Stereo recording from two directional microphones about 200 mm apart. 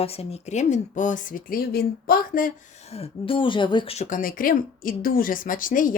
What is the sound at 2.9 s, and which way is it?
A woman's voice, 30° left (ahead or behind).